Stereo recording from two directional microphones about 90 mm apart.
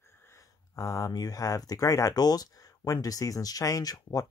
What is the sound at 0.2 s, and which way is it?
Speech, 35° left (ahead or behind).